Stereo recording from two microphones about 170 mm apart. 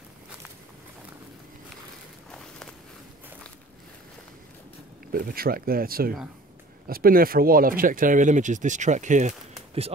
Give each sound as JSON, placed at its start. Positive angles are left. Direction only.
{"t": 5.1, "sound": "speech", "side_deg": -60}